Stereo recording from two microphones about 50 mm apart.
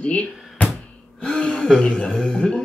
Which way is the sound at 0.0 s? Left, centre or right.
Left.